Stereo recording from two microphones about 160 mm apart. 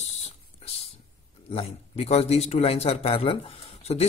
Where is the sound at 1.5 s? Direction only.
40° left (ahead or behind).